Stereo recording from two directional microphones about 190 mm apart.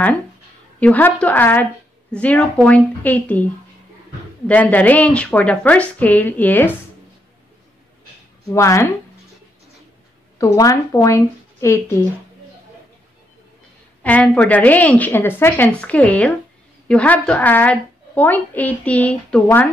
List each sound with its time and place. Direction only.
0.7 s a woman's voice: 5° left (ahead or behind)
4.5 s a woman's voice: 10° left (ahead or behind)
8.5 s a woman's voice: 15° left (ahead or behind)
10.4 s a woman's voice: 15° left (ahead or behind)
14.0 s a woman's voice: 5° left (ahead or behind)